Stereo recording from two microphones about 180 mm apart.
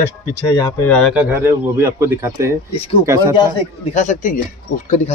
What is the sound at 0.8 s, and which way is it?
Speech, 5° left (ahead or behind).